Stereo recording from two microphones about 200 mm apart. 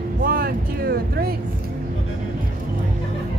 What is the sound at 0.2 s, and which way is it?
Music, 50° right (ahead or behind).